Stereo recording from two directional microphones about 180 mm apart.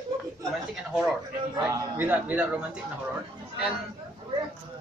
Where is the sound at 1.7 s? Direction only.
15° right (ahead or behind).